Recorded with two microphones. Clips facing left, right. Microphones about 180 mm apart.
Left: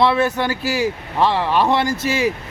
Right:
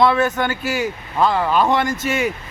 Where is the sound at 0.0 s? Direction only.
30° left (ahead or behind).